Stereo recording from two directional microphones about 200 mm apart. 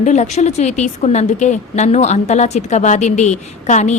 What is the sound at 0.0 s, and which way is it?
A woman's voice, 35° left (ahead or behind).